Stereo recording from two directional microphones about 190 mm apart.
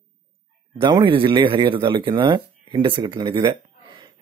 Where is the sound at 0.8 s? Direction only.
25° right (ahead or behind).